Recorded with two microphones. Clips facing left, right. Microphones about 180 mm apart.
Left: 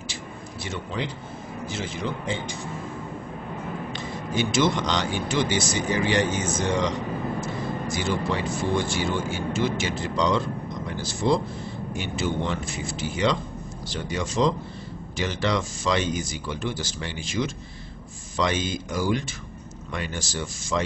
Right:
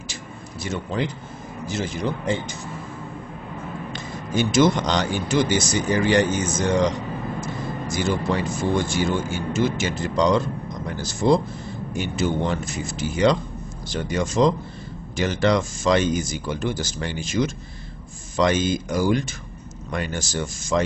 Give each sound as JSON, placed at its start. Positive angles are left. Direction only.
{"t": 0.7, "sound": "speech", "side_deg": -50}
{"t": 3.9, "sound": "speech", "side_deg": -45}
{"t": 7.9, "sound": "speech", "side_deg": -45}